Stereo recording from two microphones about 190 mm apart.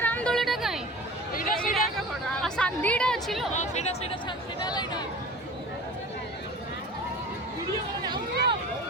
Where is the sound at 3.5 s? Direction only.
35° left (ahead or behind).